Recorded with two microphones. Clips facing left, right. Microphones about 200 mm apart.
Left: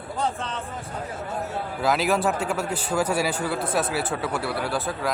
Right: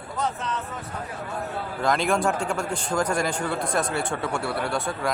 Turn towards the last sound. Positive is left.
turn(degrees=0)  # may be behind; listen again after turning